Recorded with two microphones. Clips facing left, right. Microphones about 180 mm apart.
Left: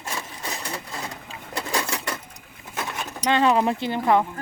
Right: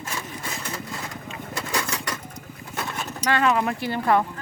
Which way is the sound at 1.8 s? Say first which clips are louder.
Left 1 dB; 20° left (ahead or behind).